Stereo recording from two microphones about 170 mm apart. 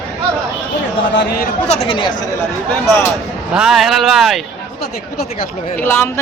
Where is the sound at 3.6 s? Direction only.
Centre (ahead or behind).